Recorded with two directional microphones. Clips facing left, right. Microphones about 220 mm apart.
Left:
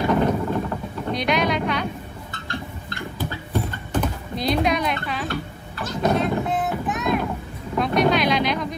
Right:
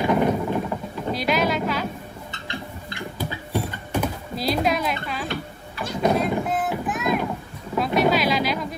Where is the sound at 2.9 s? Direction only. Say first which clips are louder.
Even; 10° right (ahead or behind).